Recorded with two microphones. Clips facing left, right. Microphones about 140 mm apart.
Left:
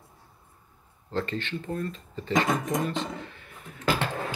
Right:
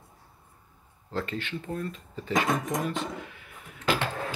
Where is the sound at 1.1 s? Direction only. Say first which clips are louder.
Left 2 dB; 5° right (ahead or behind).